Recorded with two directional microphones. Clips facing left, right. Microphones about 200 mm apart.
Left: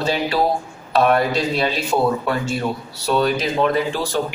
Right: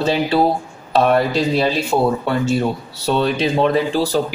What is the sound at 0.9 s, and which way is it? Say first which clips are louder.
Speech: right 2 dB; 30° right (ahead or behind).